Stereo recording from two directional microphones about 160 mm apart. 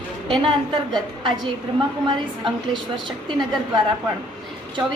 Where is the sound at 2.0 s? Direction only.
30° right (ahead or behind).